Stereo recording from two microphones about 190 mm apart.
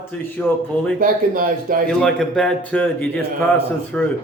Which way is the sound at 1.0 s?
45° right (ahead or behind).